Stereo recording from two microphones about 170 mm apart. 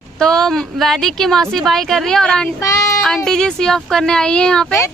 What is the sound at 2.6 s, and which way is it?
Child singing, 20° left (ahead or behind).